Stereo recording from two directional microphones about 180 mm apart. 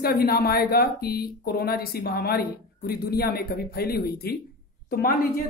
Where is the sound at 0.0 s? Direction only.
55° left (ahead or behind).